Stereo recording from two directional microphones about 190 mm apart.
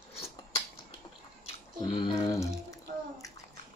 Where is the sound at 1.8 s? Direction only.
25° left (ahead or behind).